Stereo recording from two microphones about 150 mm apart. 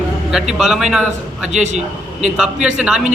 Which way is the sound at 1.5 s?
50° right (ahead or behind).